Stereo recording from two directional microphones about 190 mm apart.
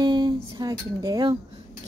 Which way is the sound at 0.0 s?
20° right (ahead or behind).